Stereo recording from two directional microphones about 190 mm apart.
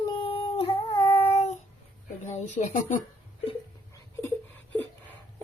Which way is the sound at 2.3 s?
40° left (ahead or behind).